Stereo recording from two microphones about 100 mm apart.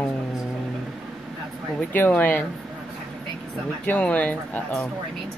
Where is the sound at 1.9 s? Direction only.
15° left (ahead or behind).